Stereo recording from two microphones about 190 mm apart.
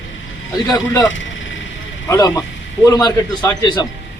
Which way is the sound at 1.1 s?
80° left.